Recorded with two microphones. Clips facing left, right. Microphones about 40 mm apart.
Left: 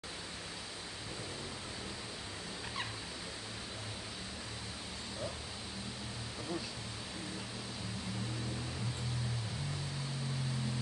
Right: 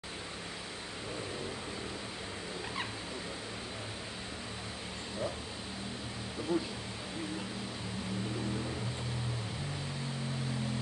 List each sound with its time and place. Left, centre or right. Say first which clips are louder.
6.5 s speech: right 8 dB; right